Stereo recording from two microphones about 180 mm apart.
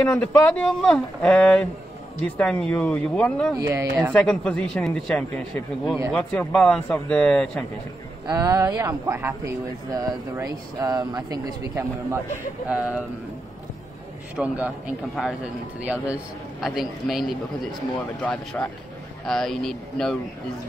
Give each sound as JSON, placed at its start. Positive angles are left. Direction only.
{"t": 0.0, "sound": "speech", "side_deg": 5}
{"t": 3.5, "sound": "speech", "side_deg": -15}
{"t": 4.1, "sound": "speech", "side_deg": 5}
{"t": 8.3, "sound": "speech", "side_deg": -15}
{"t": 12.6, "sound": "speech", "side_deg": -5}
{"t": 14.3, "sound": "speech", "side_deg": -10}